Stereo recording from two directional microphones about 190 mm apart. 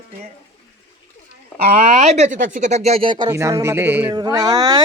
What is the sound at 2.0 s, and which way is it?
Speech, 35° right (ahead or behind).